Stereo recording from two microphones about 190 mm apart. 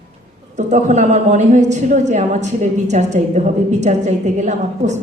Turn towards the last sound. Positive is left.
turn(degrees=-40)  # may be behind; listen again after turning